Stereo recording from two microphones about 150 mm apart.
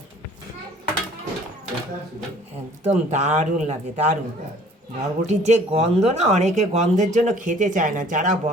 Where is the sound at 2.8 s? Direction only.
50° right (ahead or behind).